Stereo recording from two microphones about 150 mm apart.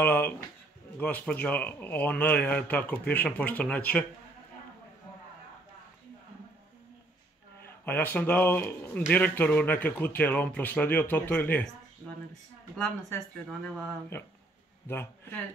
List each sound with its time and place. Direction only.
0.0 s speech: 15° left (ahead or behind)
7.8 s speech: 10° left (ahead or behind)
14.1 s speech: 15° left (ahead or behind)